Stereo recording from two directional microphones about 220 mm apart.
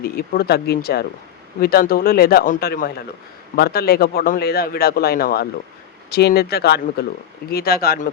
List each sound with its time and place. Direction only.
0.0 s a man's voice: 45° left (ahead or behind)